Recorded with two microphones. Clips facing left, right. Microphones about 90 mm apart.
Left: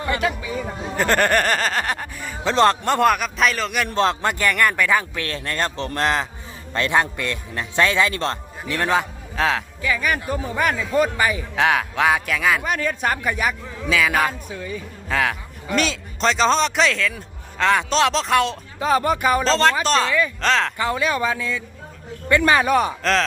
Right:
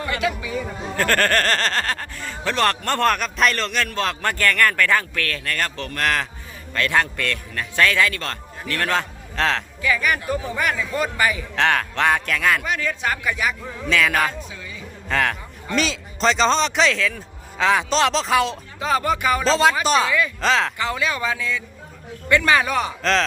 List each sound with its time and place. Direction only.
0.1 s speech: 40° left (ahead or behind)
0.9 s speech: 20° left (ahead or behind)
3.8 s a man's voice: 25° left (ahead or behind); by 9.6 s 5° left (ahead or behind)
9.8 s speech: 30° left (ahead or behind)
11.5 s speech: 10° left (ahead or behind)
12.6 s speech: 45° left (ahead or behind)
13.5 s a man's voice: 5° left (ahead or behind)
18.9 s speech: 35° left (ahead or behind)
19.5 s speech: 5° right (ahead or behind)
20.7 s speech: 35° left (ahead or behind)